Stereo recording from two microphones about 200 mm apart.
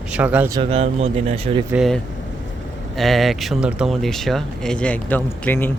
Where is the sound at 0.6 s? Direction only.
30° right (ahead or behind).